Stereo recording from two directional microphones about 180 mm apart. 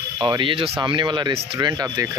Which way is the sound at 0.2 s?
25° right (ahead or behind).